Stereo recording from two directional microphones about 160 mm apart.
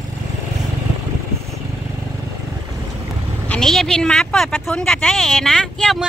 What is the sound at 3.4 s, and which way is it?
Speech, 5° left (ahead or behind).